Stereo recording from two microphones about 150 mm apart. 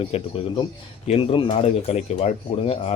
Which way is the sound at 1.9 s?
45° left (ahead or behind).